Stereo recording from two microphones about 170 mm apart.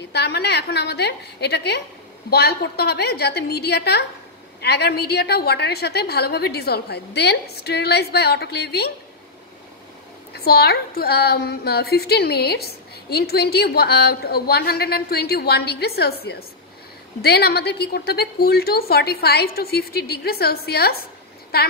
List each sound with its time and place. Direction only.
0.1 s a woman's voice: 75° left (ahead or behind)
10.3 s a woman's voice: 65° left (ahead or behind)